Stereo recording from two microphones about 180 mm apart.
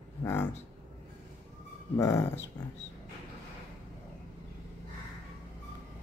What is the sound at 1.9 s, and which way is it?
Speech, 15° left (ahead or behind).